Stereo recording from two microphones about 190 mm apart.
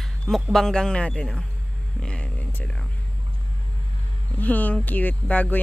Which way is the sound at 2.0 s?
5° left (ahead or behind).